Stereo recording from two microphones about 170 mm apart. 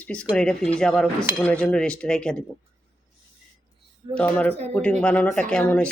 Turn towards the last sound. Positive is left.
turn(degrees=5)  # may be behind; listen again after turning